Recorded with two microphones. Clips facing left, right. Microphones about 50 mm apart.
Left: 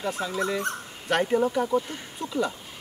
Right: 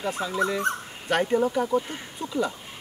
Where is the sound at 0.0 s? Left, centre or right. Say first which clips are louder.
Right 2 dB; centre.